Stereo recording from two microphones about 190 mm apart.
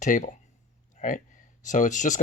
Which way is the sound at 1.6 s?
40° left (ahead or behind).